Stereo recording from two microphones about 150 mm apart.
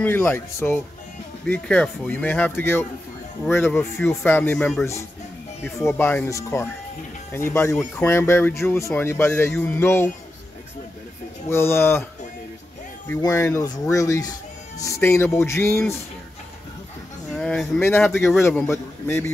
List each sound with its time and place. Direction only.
0.0 s speech: 10° left (ahead or behind)
7.7 s speech: 5° left (ahead or behind)
8.1 s speech: 15° left (ahead or behind)
11.4 s speech: 15° left (ahead or behind)
13.2 s speech: 20° left (ahead or behind)
17.3 s a sound: 5° left (ahead or behind)
18.0 s speech: centre (ahead or behind)
18.5 s speech: 15° left (ahead or behind)